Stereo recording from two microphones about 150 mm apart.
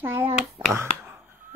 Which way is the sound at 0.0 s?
15° right (ahead or behind).